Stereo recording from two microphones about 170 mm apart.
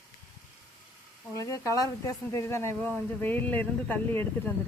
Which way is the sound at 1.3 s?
20° left (ahead or behind).